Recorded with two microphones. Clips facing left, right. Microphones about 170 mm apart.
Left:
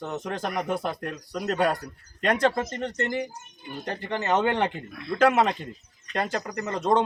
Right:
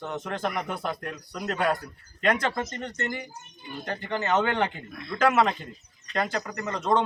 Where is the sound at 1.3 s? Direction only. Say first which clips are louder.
Left 2 dB; 35° left (ahead or behind).